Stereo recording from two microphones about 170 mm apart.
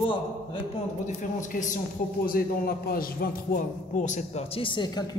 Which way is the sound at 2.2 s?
60° left (ahead or behind).